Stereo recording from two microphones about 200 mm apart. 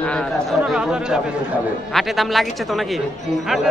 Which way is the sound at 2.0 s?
Centre (ahead or behind).